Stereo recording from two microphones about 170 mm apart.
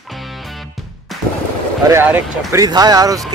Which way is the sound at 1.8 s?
10° right (ahead or behind).